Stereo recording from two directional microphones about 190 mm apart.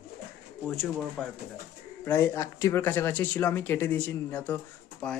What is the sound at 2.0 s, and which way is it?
Speech, 15° left (ahead or behind).